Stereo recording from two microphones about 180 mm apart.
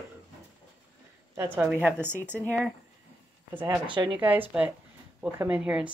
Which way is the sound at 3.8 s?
25° right (ahead or behind).